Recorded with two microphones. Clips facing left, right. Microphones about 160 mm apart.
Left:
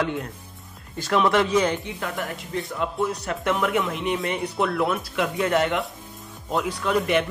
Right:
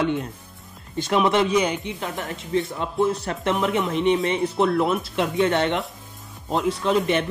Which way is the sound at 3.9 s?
Centre (ahead or behind).